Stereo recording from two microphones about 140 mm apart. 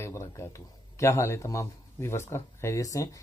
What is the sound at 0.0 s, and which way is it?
A man's voice, 20° left (ahead or behind).